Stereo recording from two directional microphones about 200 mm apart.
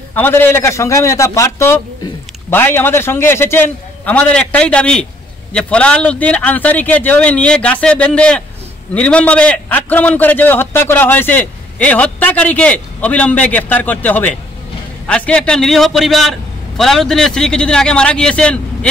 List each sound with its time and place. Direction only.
0.1 s a man's voice: 10° left (ahead or behind)